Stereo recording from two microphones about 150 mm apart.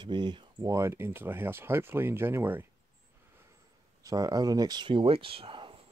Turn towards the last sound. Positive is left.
turn(degrees=-35)  # may be behind; listen again after turning